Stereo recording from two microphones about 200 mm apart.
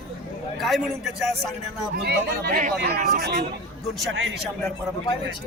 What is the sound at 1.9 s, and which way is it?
Speech, 55° right (ahead or behind).